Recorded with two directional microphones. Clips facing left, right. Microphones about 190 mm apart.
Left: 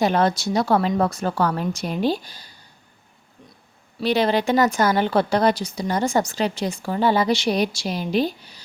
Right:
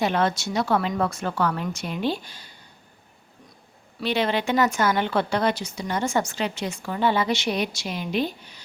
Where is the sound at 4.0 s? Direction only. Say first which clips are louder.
Left 4 dB; 40° left (ahead or behind).